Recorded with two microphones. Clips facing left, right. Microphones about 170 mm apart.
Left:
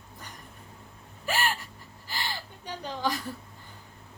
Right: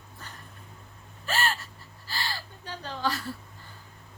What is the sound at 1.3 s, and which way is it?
Gasp, 15° left (ahead or behind).